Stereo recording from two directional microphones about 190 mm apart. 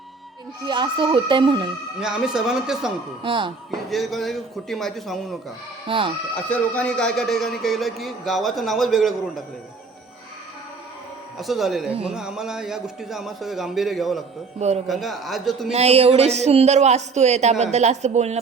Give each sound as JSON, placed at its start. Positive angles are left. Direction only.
{"t": 0.6, "sound": "speech", "side_deg": -25}
{"t": 2.0, "sound": "a man's voice", "side_deg": -5}
{"t": 3.2, "sound": "speech", "side_deg": -25}
{"t": 3.8, "sound": "a man's voice", "side_deg": 0}
{"t": 5.9, "sound": "speech", "side_deg": -30}
{"t": 6.3, "sound": "a man's voice", "side_deg": 5}
{"t": 11.3, "sound": "a man's voice", "side_deg": 0}
{"t": 11.9, "sound": "a man's voice", "side_deg": -30}
{"t": 12.1, "sound": "a man's voice", "side_deg": -5}
{"t": 15.7, "sound": "a man's voice", "side_deg": -35}